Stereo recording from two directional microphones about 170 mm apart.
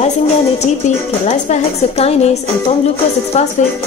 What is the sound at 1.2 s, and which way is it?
Speech, 45° left (ahead or behind).